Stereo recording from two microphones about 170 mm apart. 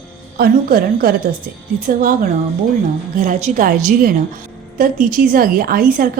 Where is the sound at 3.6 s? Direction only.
55° right (ahead or behind).